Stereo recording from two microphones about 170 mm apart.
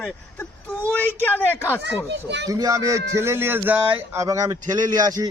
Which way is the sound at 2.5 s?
20° right (ahead or behind).